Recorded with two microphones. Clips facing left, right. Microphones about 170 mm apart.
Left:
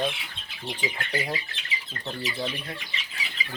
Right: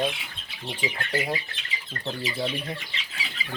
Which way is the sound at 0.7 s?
10° right (ahead or behind).